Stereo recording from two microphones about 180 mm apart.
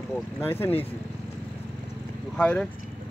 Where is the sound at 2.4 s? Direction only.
5° left (ahead or behind).